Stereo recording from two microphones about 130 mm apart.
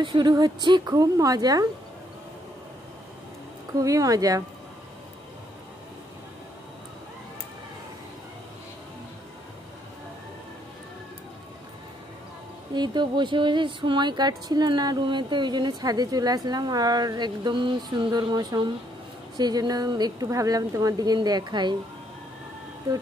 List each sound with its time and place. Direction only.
0.0 s a woman's voice: 35° right (ahead or behind)
3.7 s a woman's voice: 25° right (ahead or behind)
12.7 s music: 35° right (ahead or behind)